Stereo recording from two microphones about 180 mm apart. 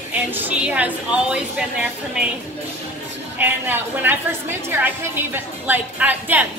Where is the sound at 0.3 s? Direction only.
10° right (ahead or behind).